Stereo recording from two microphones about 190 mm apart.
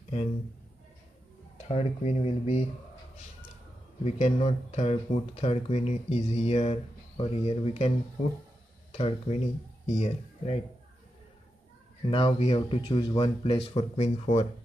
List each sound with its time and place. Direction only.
1.7 s speech: 35° left (ahead or behind)
4.0 s speech: 35° left (ahead or behind)
8.9 s speech: 35° left (ahead or behind)
12.1 s speech: 30° left (ahead or behind)